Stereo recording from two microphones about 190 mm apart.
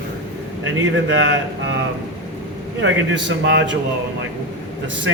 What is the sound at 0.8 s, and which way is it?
Speech, 80° right.